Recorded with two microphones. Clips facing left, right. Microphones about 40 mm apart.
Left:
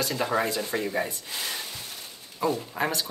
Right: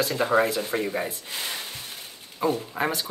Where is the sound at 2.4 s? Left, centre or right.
Right.